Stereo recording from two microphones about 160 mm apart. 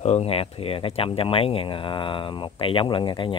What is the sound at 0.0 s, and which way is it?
Speech, 40° left (ahead or behind).